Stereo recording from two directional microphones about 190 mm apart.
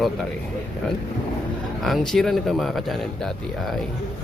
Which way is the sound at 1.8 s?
Centre (ahead or behind).